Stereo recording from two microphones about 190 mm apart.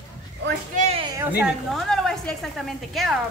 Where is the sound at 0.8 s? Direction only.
35° right (ahead or behind).